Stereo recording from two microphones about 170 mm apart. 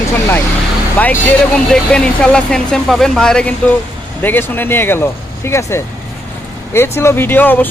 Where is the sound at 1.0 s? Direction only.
10° left (ahead or behind).